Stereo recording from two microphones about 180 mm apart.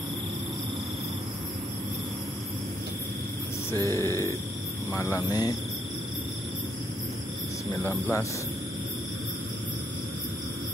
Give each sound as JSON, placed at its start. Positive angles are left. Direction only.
{"t": 3.7, "sound": "a sound", "side_deg": 15}
{"t": 4.9, "sound": "speech", "side_deg": 15}
{"t": 7.8, "sound": "speech", "side_deg": 15}